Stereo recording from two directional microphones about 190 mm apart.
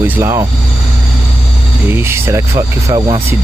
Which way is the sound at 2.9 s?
25° right (ahead or behind).